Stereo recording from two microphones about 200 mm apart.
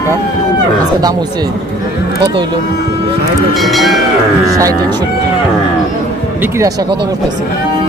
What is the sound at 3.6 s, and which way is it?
Speech, centre (ahead or behind).